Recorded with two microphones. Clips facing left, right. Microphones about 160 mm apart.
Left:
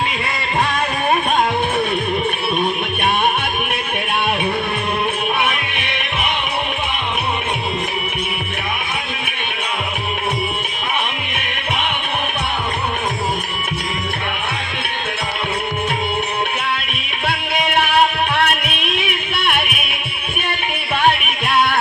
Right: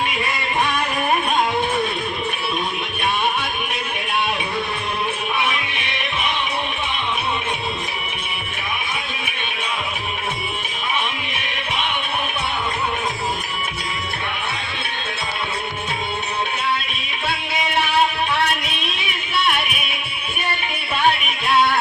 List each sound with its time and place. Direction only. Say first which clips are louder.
5.4 s music: left 2 dB; 60° left (ahead or behind)
17.2 s music: left 4 dB; 60° left (ahead or behind)
21.0 s music: left 2 dB; 55° left (ahead or behind)